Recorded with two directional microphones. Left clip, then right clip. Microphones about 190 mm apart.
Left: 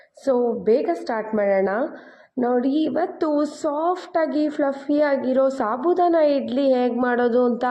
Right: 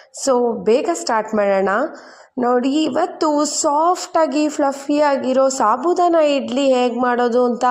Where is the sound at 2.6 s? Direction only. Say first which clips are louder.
Right 3 dB; 55° right (ahead or behind).